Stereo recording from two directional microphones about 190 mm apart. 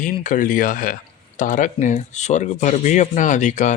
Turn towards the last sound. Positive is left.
turn(degrees=40)  # may be behind; listen again after turning